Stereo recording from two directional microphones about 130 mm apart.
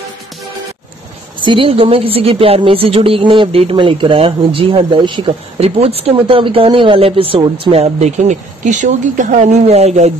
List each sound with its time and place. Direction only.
1.4 s a woman's voice: 40° right (ahead or behind)
7.8 s speech: 60° right (ahead or behind)